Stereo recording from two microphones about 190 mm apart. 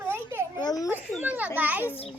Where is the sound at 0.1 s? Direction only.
10° right (ahead or behind).